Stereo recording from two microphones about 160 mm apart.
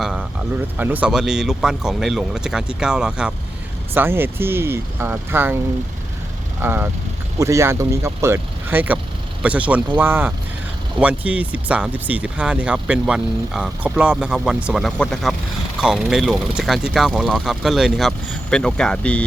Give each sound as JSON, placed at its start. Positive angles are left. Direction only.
{"t": 0.0, "sound": "speech", "side_deg": -5}
{"t": 6.6, "sound": "speech", "side_deg": -15}